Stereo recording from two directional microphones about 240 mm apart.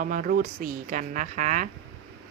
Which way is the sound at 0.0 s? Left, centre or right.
Right.